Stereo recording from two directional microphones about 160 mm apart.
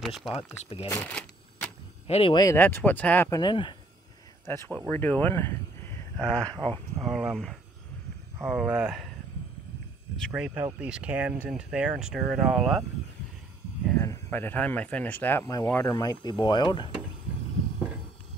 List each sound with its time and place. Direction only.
0.0 s speech: centre (ahead or behind)
1.0 s shuffling cards: 5° left (ahead or behind)
2.0 s speech: 40° left (ahead or behind)
2.5 s speech: 10° left (ahead or behind)
3.3 s speech: 25° left (ahead or behind)
4.5 s speech: 15° left (ahead or behind)
10.3 s speech: 5° right (ahead or behind)
13.9 s speech: 15° left (ahead or behind); by 17.0 s 30° left (ahead or behind)